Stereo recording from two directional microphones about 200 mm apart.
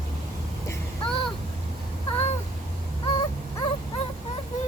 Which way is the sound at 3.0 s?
25° left (ahead or behind).